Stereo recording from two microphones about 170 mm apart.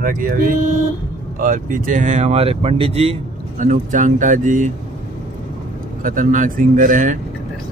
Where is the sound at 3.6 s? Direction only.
50° right (ahead or behind).